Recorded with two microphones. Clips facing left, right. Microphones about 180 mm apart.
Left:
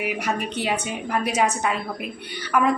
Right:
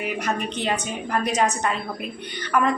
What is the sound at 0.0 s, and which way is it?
A woman's voice, 10° left (ahead or behind).